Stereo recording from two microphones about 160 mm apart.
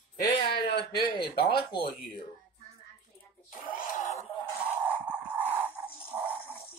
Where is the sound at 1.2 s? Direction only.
80° left.